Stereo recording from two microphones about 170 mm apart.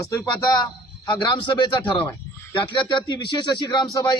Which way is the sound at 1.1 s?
30° left (ahead or behind).